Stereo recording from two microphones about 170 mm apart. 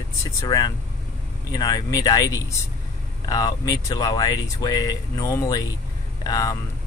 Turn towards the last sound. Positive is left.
turn(degrees=20)  # may be behind; listen again after turning